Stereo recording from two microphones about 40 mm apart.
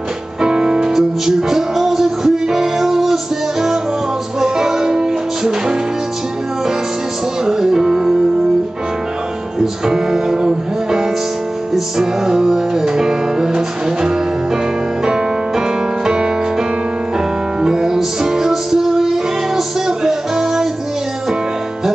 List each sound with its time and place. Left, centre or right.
0.4 s music: centre
4.4 s music: centre
7.4 s music: centre
9.6 s music: centre